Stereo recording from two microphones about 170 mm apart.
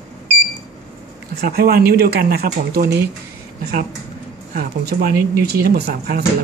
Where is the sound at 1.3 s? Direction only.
65° right (ahead or behind).